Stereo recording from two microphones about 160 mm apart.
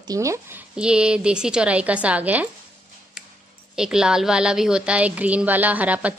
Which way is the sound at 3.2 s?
5° right (ahead or behind).